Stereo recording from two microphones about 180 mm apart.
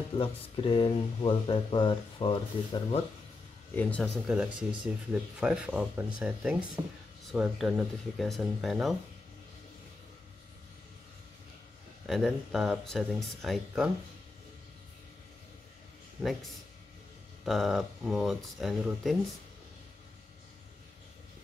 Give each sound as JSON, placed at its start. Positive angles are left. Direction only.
{"t": 0.2, "sound": "speech", "side_deg": 30}
{"t": 3.7, "sound": "speech", "side_deg": 5}
{"t": 12.1, "sound": "speech", "side_deg": 0}
{"t": 16.2, "sound": "speech", "side_deg": 0}
{"t": 17.5, "sound": "speech", "side_deg": 0}